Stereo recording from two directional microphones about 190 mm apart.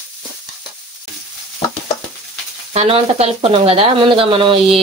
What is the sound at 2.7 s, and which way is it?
Speech, 35° right (ahead or behind).